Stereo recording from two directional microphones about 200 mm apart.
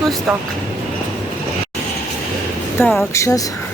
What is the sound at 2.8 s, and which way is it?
Speech, 10° left (ahead or behind).